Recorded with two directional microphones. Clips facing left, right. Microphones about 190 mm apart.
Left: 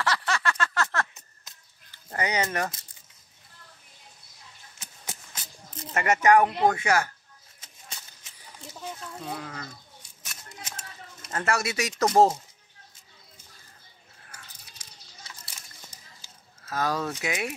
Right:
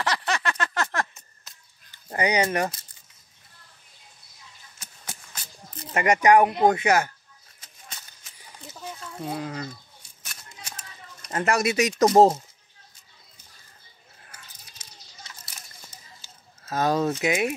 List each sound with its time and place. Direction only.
0.0 s a sound: 20° right (ahead or behind)
1.9 s speech: 15° right (ahead or behind)
4.7 s a sound: 20° left (ahead or behind)
5.9 s speech: 15° right (ahead or behind)
9.2 s speech: 20° right (ahead or behind)
11.2 s speech: 15° right (ahead or behind)
14.8 s chicken: 20° right (ahead or behind)
16.2 s a sound: 15° left (ahead or behind)
16.6 s speech: 25° right (ahead or behind)